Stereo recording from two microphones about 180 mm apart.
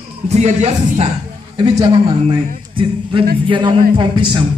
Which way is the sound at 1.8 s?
25° right (ahead or behind).